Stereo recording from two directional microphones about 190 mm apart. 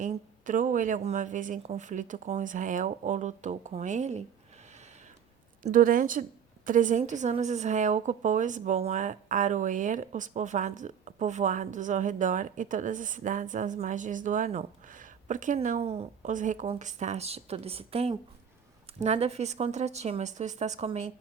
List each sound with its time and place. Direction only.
0.0 s a woman's voice: 40° right (ahead or behind)
5.6 s a woman's voice: 45° right (ahead or behind)